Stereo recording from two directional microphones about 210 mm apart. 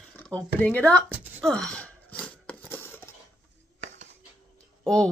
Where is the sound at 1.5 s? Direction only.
5° left (ahead or behind).